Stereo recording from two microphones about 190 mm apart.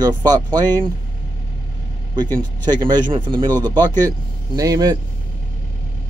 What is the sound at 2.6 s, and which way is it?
Speech, 25° right (ahead or behind).